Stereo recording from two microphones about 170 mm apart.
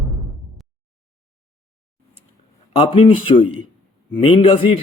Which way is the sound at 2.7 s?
30° left (ahead or behind).